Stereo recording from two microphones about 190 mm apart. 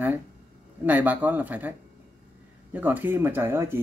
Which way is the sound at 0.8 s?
10° right (ahead or behind).